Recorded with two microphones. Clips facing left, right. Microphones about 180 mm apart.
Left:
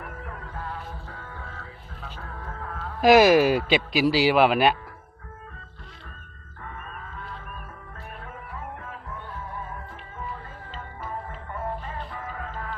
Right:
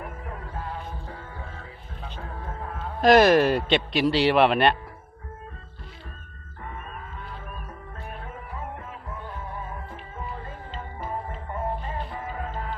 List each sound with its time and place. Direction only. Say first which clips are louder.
1.0 s music: right 2 dB; 25° right (ahead or behind)
3.0 s a man's voice: left 1 dB; 5° left (ahead or behind)
11.5 s music: right 2 dB; 25° right (ahead or behind)